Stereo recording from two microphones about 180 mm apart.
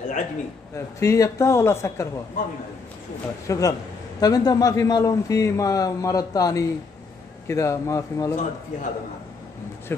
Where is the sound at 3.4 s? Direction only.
20° left (ahead or behind).